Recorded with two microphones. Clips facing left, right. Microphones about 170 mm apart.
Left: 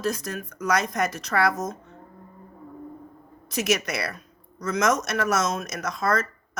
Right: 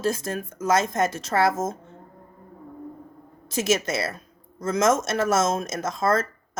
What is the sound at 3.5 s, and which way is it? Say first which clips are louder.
Speech: right 2 dB; 25° right (ahead or behind).